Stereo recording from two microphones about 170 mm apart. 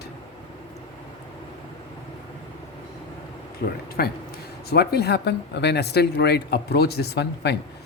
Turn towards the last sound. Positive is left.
turn(degrees=75)  # may be behind; listen again after turning